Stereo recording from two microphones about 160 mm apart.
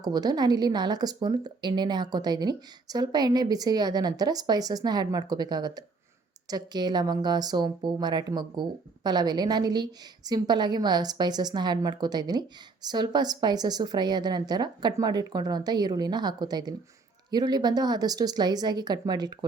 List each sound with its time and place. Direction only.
0.0 s a woman's voice: 25° right (ahead or behind)